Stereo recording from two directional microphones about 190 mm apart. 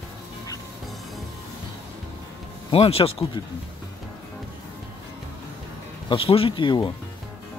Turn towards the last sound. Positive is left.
turn(degrees=25)  # may be behind; listen again after turning